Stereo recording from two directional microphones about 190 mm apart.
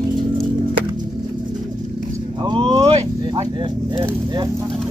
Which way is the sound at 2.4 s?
25° right (ahead or behind).